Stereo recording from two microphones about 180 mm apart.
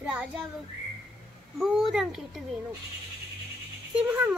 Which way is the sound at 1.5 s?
Centre (ahead or behind).